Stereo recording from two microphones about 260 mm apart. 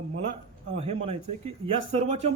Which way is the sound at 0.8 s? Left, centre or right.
Right.